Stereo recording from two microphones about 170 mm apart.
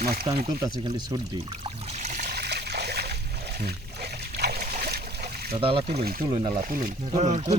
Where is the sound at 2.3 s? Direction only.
70° right (ahead or behind).